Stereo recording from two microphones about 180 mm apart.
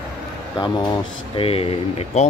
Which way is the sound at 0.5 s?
25° left (ahead or behind).